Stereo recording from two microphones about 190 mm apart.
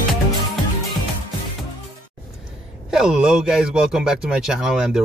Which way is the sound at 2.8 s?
5° right (ahead or behind).